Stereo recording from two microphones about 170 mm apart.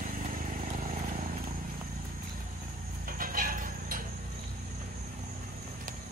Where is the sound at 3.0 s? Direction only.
55° right (ahead or behind).